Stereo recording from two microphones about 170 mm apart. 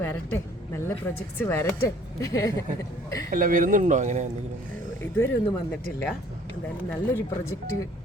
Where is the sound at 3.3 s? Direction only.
55° right (ahead or behind).